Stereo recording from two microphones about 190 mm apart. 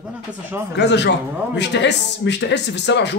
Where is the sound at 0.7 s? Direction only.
65° left (ahead or behind).